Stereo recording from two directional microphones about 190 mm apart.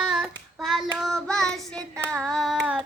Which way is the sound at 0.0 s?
Centre (ahead or behind).